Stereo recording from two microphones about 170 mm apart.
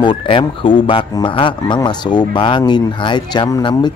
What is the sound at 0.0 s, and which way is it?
A man's voice, 30° left (ahead or behind).